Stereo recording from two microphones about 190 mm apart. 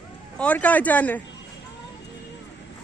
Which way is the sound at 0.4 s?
10° left (ahead or behind).